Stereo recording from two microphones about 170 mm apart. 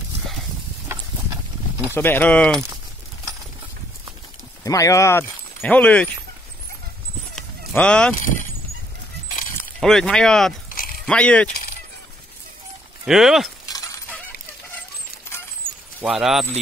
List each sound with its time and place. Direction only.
2.0 s speech: 10° left (ahead or behind)
4.6 s speech: 20° left (ahead or behind)
7.7 s speech: 5° left (ahead or behind)
9.6 s speech: 5° left (ahead or behind)
10.7 s biting: 55° left (ahead or behind)
11.1 s speech: 5° left (ahead or behind)
13.0 s speech: centre (ahead or behind)
16.0 s speech: centre (ahead or behind)